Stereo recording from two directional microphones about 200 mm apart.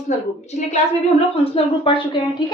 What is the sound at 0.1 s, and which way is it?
A woman's voice, 35° left (ahead or behind).